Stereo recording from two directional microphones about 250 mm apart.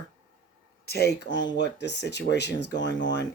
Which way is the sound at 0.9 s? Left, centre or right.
Left.